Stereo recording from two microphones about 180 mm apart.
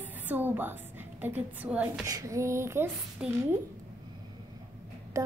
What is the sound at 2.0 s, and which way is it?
A woman's voice, 20° right (ahead or behind).